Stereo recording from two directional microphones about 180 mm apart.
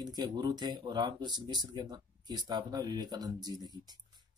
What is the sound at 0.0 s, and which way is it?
Speech, 20° right (ahead or behind).